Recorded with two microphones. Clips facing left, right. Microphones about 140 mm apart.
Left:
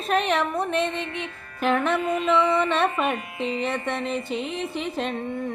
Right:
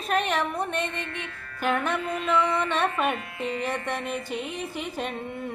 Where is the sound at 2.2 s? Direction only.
25° left (ahead or behind).